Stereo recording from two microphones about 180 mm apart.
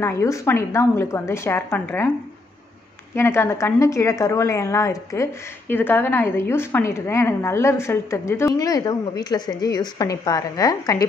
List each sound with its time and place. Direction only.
0.0 s a woman's voice: 15° left (ahead or behind)
3.2 s a woman's voice: 15° left (ahead or behind)